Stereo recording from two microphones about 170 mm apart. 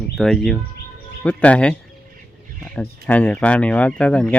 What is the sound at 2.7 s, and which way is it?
Speech, 5° left (ahead or behind).